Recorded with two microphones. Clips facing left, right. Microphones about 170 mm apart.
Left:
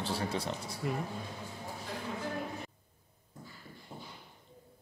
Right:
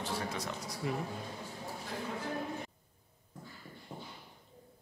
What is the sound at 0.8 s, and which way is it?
Speech, centre (ahead or behind).